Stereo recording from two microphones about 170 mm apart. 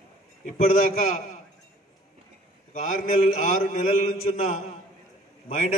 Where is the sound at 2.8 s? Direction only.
50° left (ahead or behind).